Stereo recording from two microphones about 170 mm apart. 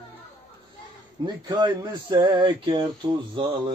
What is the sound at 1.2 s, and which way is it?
Speech, 25° right (ahead or behind).